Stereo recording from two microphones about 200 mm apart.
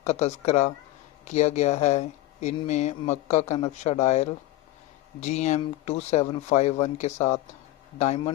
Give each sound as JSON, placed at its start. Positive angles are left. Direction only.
{"t": 0.0, "sound": "speech", "side_deg": 35}